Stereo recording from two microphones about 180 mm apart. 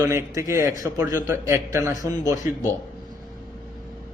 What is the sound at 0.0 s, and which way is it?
A man's voice, 15° right (ahead or behind).